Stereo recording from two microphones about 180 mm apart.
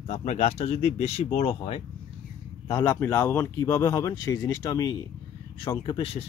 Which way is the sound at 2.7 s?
15° left (ahead or behind).